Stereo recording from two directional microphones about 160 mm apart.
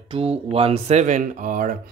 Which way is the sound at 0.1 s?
40° right (ahead or behind).